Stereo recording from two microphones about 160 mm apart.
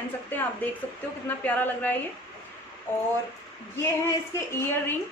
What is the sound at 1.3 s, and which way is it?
Speech, 10° left (ahead or behind).